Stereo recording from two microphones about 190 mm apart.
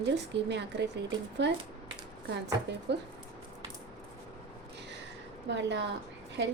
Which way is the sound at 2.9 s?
65° right (ahead or behind).